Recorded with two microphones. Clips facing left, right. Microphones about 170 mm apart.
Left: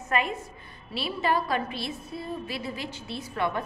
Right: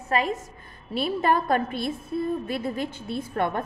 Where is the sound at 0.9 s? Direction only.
50° right (ahead or behind).